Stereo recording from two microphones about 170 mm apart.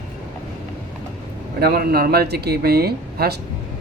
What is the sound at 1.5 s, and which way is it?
Speech, 65° right (ahead or behind).